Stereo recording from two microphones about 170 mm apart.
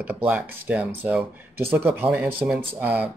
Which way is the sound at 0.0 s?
5° right (ahead or behind).